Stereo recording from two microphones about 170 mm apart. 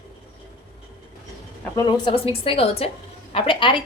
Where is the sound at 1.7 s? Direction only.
25° left (ahead or behind).